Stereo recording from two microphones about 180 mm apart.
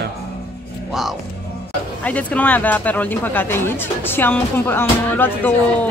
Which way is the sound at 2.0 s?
10° left (ahead or behind).